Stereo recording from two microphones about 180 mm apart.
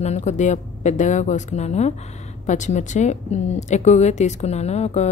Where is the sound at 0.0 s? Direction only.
40° left (ahead or behind).